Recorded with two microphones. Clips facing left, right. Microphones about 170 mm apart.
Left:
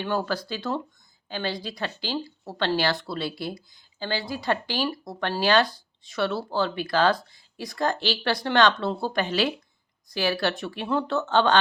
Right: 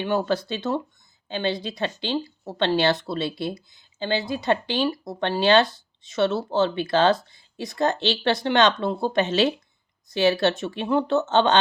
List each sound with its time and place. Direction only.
0.0 s speech: 20° right (ahead or behind)